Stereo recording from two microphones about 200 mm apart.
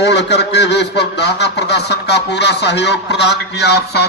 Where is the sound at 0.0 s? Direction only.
60° left (ahead or behind).